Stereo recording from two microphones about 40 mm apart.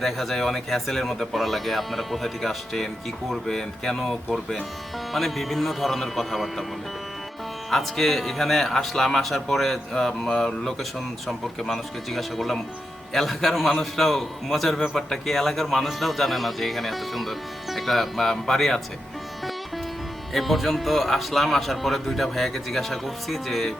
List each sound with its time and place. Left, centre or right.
0.0 s a man's voice: centre
7.7 s a man's voice: centre
20.3 s a man's voice: centre